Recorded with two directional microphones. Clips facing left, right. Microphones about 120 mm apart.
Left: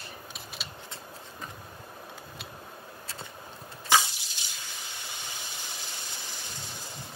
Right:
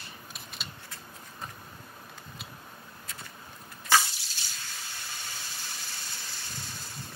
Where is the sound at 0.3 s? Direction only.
Centre (ahead or behind).